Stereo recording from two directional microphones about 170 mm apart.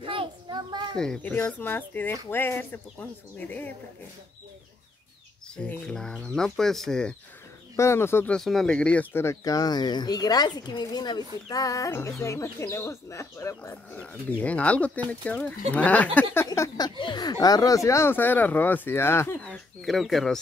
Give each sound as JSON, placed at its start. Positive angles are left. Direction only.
{"t": 0.0, "sound": "a sound", "side_deg": -30}
{"t": 0.9, "sound": "speech", "side_deg": 5}
{"t": 5.6, "sound": "speech", "side_deg": 5}
{"t": 7.7, "sound": "speech", "side_deg": 15}
{"t": 8.4, "sound": "speech", "side_deg": 0}
{"t": 16.4, "sound": "speech", "side_deg": 20}
{"t": 19.4, "sound": "speech", "side_deg": 5}